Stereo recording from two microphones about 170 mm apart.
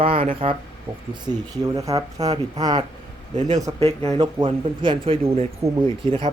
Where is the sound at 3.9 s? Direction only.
35° right (ahead or behind).